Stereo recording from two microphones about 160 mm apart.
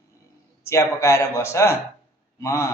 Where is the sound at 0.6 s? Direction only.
15° left (ahead or behind).